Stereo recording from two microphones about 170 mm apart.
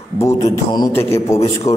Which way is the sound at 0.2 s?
20° left (ahead or behind).